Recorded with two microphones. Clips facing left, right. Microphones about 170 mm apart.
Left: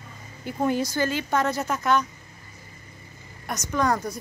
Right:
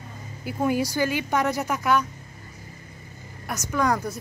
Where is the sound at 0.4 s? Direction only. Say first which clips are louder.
Right 1 dB; 5° right (ahead or behind).